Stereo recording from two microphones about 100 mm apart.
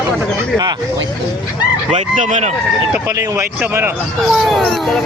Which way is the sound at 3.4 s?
20° right (ahead or behind).